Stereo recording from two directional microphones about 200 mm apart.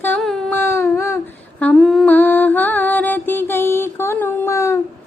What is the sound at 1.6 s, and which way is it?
Humming, 5° left (ahead or behind).